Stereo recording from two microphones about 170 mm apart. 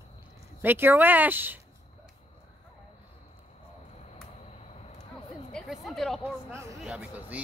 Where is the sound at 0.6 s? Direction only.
10° right (ahead or behind).